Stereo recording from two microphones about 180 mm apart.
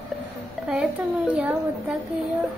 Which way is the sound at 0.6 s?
5° right (ahead or behind).